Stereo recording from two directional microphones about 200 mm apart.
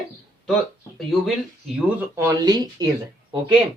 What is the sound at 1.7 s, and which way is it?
Speech, 5° right (ahead or behind).